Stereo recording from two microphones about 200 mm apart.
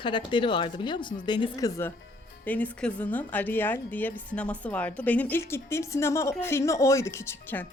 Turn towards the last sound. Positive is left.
turn(degrees=10)  # may be behind; listen again after turning